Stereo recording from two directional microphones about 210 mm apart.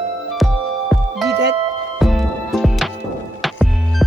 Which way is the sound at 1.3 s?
55° right (ahead or behind).